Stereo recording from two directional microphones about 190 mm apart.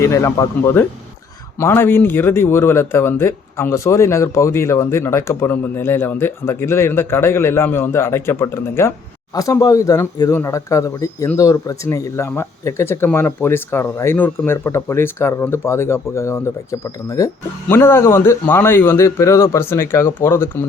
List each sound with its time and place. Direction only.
0.0 s speech: 15° left (ahead or behind)